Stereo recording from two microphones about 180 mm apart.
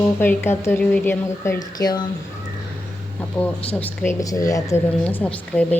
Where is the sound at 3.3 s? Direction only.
10° left (ahead or behind).